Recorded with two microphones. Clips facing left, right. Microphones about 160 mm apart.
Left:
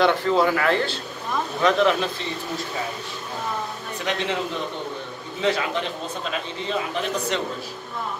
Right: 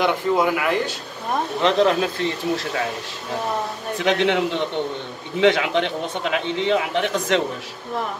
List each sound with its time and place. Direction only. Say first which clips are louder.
0.0 s speech: even; 15° right (ahead or behind)
1.6 s speech: right 1 dB; 30° right (ahead or behind)
2.1 s speech: right 7 dB; 80° right
4.0 s a man's voice: right 7 dB; 90° right